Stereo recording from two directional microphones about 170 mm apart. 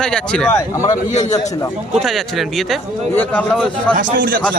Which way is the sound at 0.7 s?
20° left (ahead or behind).